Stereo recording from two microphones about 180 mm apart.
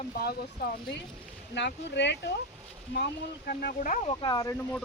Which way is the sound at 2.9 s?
60° left (ahead or behind).